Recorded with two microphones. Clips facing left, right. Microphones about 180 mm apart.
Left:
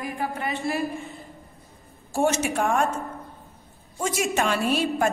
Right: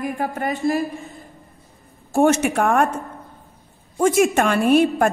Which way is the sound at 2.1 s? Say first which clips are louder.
Right 6 dB; 60° right (ahead or behind).